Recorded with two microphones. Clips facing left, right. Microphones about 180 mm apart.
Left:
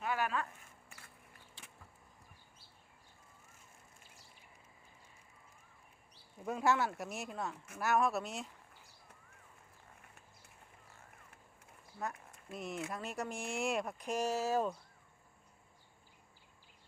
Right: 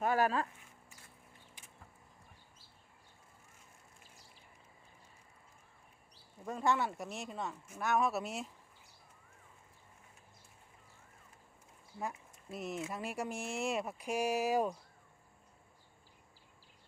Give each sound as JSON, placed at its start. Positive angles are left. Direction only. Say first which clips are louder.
{"t": 0.0, "sound": "speech", "louder": "right 5 dB", "side_deg": -40}
{"t": 6.4, "sound": "speech", "louder": "left 1 dB", "side_deg": 5}
{"t": 12.5, "sound": "speech", "louder": "right 1 dB", "side_deg": 0}